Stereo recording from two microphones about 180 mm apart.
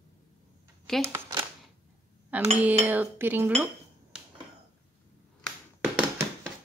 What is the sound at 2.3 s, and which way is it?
Dishes, 10° right (ahead or behind).